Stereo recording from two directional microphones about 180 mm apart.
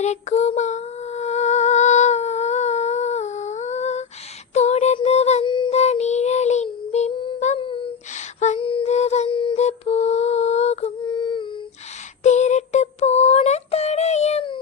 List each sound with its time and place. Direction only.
0.0 s female singing: 40° left (ahead or behind)
4.9 s child singing: 35° left (ahead or behind)
8.1 s a sound: 40° left (ahead or behind)
12.2 s synthetic singing: 40° left (ahead or behind)